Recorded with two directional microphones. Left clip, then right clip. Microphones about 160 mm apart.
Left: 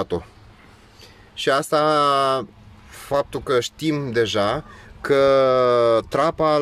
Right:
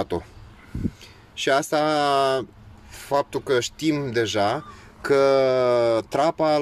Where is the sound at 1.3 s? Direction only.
35° left (ahead or behind).